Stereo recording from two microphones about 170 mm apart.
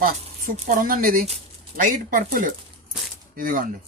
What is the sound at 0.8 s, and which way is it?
Speech, 55° right (ahead or behind).